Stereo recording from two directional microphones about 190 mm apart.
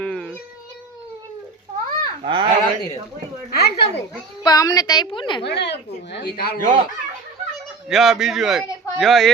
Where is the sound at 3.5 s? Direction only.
55° left (ahead or behind).